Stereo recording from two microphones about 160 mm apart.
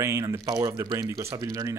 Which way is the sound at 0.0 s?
15° right (ahead or behind).